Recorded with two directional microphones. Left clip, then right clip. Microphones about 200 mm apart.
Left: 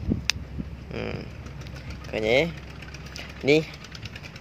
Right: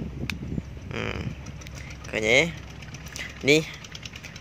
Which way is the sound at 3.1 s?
Centre (ahead or behind).